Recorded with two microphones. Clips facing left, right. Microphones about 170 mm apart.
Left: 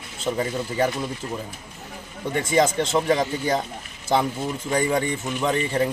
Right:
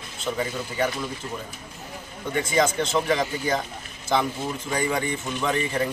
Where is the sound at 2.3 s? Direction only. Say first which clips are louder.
Left 2 dB; 35° left (ahead or behind).